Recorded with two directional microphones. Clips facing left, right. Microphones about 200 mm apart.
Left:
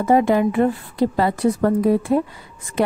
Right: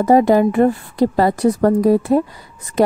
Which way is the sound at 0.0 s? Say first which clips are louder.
Right 4 dB; 40° right (ahead or behind).